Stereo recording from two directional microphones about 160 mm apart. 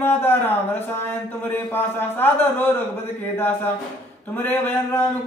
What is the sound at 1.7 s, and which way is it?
Speech, 10° left (ahead or behind).